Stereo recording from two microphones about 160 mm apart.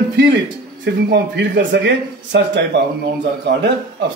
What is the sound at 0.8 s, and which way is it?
Speech, 90° right.